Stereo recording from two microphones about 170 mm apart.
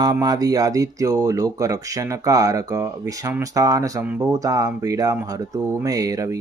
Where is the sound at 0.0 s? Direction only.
25° right (ahead or behind).